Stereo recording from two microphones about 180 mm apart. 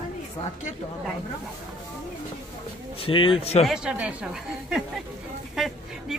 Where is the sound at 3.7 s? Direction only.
5° right (ahead or behind).